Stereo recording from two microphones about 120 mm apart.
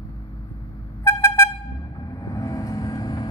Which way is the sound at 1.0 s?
25° left (ahead or behind).